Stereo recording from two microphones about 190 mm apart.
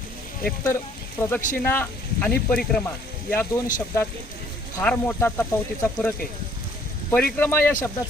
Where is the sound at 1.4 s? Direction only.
40° left (ahead or behind).